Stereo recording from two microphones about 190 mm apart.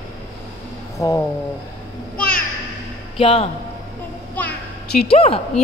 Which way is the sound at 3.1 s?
30° left (ahead or behind).